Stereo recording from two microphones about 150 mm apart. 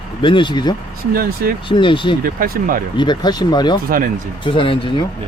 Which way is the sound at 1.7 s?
35° left (ahead or behind).